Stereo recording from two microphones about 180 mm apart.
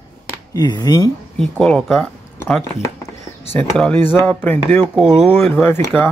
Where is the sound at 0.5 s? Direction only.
20° left (ahead or behind).